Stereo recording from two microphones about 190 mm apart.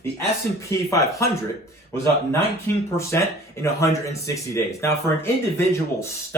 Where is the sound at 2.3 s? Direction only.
15° left (ahead or behind).